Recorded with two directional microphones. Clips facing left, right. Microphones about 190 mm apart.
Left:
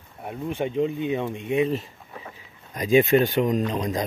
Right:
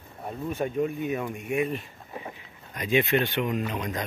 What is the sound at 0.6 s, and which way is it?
Speech, 20° left (ahead or behind).